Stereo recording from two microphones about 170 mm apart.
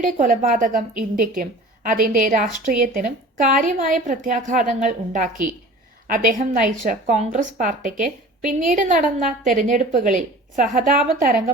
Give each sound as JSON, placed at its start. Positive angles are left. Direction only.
{"t": 0.0, "sound": "a woman's voice", "side_deg": -50}